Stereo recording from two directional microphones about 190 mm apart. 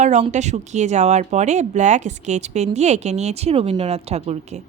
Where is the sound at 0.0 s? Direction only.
40° right (ahead or behind).